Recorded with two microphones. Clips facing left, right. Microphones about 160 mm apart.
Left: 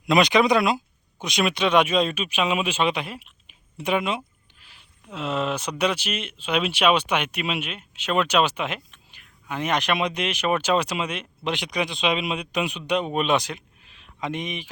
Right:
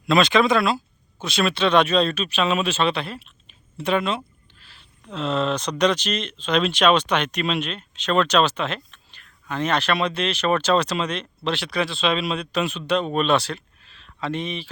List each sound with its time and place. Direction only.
0.0 s speech: 20° left (ahead or behind)